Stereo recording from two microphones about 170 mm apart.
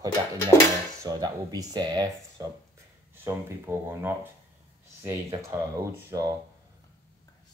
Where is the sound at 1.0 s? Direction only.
20° right (ahead or behind).